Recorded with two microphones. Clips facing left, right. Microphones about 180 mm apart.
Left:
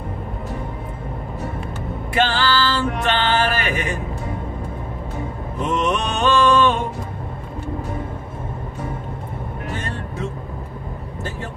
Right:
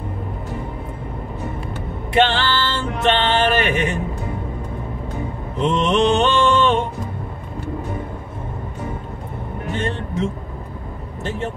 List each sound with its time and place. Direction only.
2.1 s music: 25° right (ahead or behind)
5.6 s mantra: 25° right (ahead or behind)